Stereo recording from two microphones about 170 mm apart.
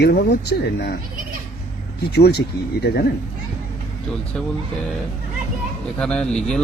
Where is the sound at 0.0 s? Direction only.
65° left (ahead or behind).